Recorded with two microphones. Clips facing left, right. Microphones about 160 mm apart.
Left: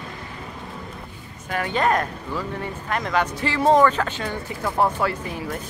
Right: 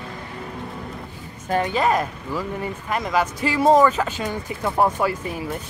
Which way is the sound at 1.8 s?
5° right (ahead or behind).